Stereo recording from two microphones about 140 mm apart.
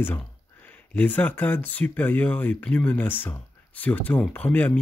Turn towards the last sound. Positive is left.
turn(degrees=10)  # may be behind; listen again after turning